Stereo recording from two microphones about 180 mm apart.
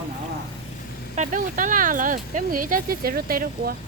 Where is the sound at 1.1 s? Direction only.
45° right (ahead or behind).